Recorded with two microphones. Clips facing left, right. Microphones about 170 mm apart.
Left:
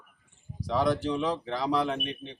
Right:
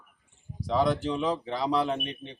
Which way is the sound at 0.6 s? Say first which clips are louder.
Right 1 dB; centre (ahead or behind).